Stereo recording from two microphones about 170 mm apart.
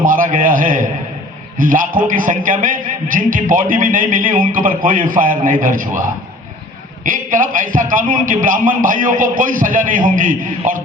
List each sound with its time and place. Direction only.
0.0 s a man's voice: 50° right (ahead or behind)